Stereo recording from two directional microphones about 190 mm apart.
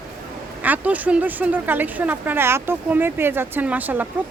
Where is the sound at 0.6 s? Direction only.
10° right (ahead or behind).